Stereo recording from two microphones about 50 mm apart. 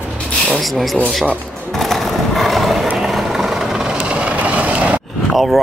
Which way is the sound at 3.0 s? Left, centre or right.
Centre.